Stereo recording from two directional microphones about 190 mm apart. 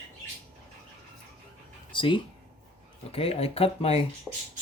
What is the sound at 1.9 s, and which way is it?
Speech, 25° left (ahead or behind).